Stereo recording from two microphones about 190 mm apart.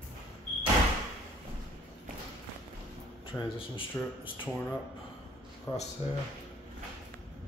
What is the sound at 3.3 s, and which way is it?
Speech, 10° left (ahead or behind).